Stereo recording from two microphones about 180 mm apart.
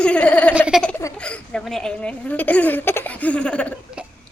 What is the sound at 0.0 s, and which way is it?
Giggle, 5° left (ahead or behind).